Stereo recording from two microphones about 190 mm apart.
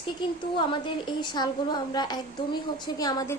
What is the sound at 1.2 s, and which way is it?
A woman's voice, 20° left (ahead or behind).